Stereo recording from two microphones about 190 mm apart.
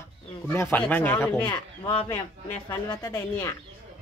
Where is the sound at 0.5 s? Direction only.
10° left (ahead or behind).